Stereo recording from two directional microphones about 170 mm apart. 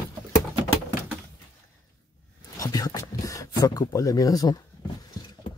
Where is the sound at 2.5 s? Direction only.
20° left (ahead or behind).